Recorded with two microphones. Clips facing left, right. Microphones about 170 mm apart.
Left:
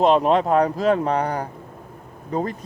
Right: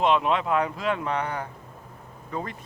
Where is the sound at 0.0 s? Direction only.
40° left (ahead or behind).